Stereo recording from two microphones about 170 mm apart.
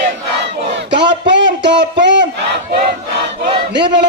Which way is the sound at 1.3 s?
90° right.